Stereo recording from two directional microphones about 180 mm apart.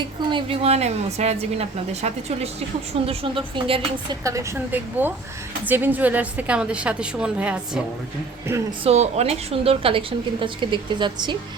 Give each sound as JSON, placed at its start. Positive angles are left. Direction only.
{"t": 0.0, "sound": "a woman's voice", "side_deg": -25}
{"t": 8.8, "sound": "a woman's voice", "side_deg": -35}